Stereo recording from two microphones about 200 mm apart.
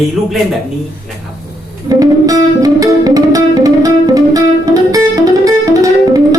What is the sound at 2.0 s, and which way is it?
Music, 15° right (ahead or behind).